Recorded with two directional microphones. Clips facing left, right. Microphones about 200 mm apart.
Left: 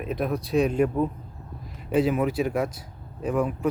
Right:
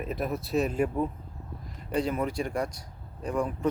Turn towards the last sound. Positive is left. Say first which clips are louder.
# left 4 dB
turn(degrees=5)  # may be behind; listen again after turning